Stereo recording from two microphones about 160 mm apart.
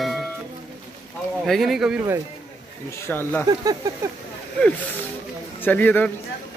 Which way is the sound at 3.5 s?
25° right (ahead or behind).